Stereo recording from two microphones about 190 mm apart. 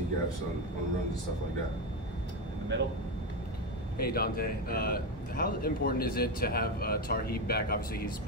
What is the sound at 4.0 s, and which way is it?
A man's voice, 50° left (ahead or behind).